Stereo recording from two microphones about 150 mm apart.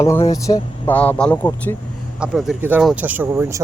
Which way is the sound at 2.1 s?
5° right (ahead or behind).